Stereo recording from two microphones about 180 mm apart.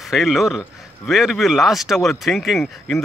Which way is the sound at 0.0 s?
Centre (ahead or behind).